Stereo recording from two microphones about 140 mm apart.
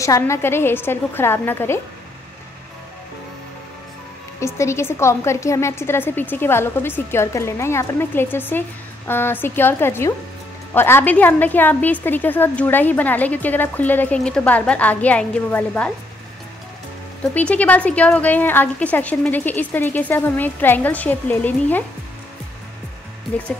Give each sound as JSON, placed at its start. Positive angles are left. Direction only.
{"t": 0.0, "sound": "a woman's voice", "side_deg": 20}
{"t": 4.4, "sound": "a woman's voice", "side_deg": 20}
{"t": 17.2, "sound": "a woman's voice", "side_deg": 10}